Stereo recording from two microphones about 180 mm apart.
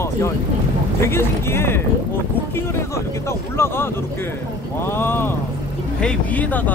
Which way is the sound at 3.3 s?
15° left (ahead or behind).